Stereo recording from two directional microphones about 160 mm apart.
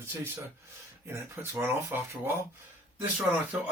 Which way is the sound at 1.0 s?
15° right (ahead or behind).